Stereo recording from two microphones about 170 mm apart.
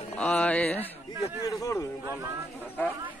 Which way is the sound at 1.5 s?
20° left (ahead or behind).